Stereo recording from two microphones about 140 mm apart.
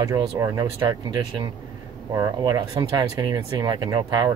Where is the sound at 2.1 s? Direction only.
35° right (ahead or behind).